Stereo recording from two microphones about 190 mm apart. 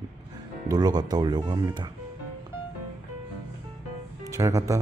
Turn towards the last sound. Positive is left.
turn(degrees=-15)  # may be behind; listen again after turning